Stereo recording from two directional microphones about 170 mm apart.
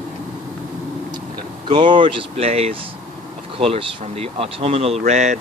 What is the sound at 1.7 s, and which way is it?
Speech, 25° right (ahead or behind).